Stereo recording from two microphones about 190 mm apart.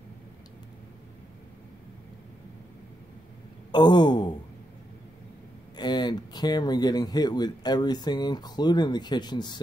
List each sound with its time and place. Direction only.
3.7 s speech: 25° left (ahead or behind)
5.8 s speech: 20° left (ahead or behind)